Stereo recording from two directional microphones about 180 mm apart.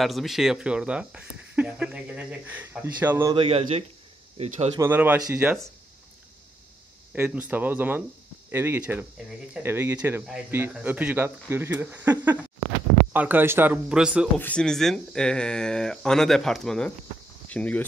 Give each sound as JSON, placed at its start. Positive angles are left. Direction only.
{"t": 0.0, "sound": "speech", "side_deg": 0}
{"t": 3.3, "sound": "a man's voice", "side_deg": -35}
{"t": 4.7, "sound": "speech", "side_deg": -10}
{"t": 7.2, "sound": "speech", "side_deg": -10}
{"t": 14.4, "sound": "speech", "side_deg": 5}